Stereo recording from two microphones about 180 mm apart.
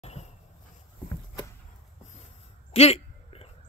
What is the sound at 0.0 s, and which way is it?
Vehicle, 35° left (ahead or behind).